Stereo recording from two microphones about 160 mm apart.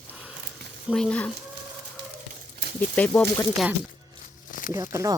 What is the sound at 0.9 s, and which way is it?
Speech, centre (ahead or behind).